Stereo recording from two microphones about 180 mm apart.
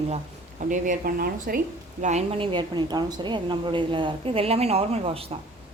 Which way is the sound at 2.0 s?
40° right (ahead or behind).